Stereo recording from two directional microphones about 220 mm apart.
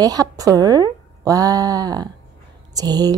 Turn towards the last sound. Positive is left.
turn(degrees=-15)  # may be behind; listen again after turning